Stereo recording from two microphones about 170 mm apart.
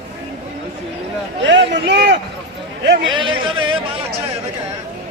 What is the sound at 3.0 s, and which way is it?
Speech, 30° right (ahead or behind).